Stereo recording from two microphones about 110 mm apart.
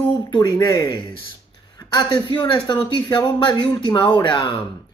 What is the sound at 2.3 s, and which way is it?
Speech, 45° left (ahead or behind).